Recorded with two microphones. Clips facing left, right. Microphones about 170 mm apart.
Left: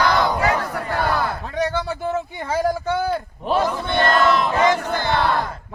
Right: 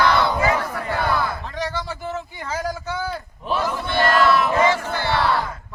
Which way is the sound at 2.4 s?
55° left (ahead or behind).